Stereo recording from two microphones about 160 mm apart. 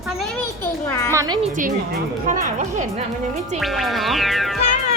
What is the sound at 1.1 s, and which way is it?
Speech, 25° right (ahead or behind).